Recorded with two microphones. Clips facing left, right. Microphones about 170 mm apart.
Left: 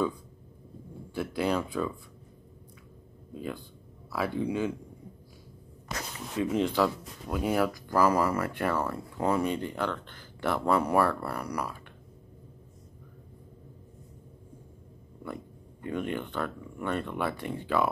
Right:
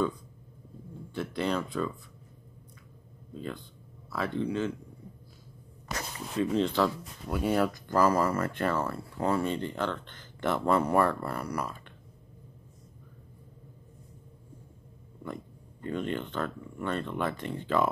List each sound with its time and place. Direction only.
1.1 s speech: 5° left (ahead or behind)
3.3 s speech: 10° left (ahead or behind)
6.3 s speech: 10° left (ahead or behind)
15.8 s speech: 15° left (ahead or behind)